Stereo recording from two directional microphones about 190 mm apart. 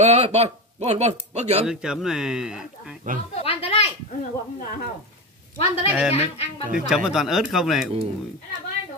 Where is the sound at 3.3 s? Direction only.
30° left (ahead or behind).